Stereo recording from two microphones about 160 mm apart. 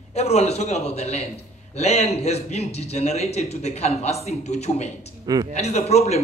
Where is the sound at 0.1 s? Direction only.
40° left (ahead or behind).